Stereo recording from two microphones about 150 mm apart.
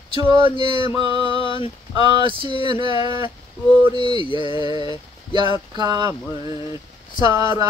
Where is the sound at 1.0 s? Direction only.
35° left (ahead or behind).